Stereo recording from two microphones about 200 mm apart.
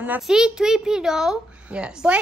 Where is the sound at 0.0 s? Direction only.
5° right (ahead or behind).